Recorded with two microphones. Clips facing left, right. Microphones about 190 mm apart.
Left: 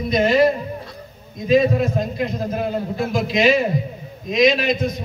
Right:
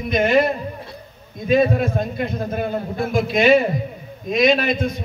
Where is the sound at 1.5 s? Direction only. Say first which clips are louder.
Left 1 dB; 55° right (ahead or behind).